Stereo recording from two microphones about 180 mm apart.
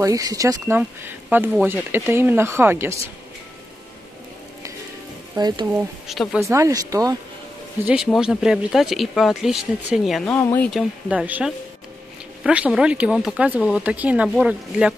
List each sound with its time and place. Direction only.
0.0 s speech: 20° right (ahead or behind)
5.3 s speech: 25° right (ahead or behind)
6.0 s speech: centre (ahead or behind)
6.4 s speech: 15° right (ahead or behind)
7.8 s speech: 5° right (ahead or behind)
10.3 s speech: 10° left (ahead or behind)
10.7 s speech: 5° right (ahead or behind)